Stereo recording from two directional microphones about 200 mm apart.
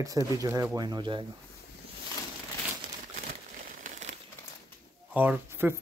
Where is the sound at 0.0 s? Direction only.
15° right (ahead or behind).